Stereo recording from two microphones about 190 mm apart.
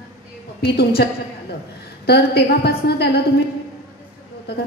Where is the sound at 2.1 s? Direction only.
60° left (ahead or behind).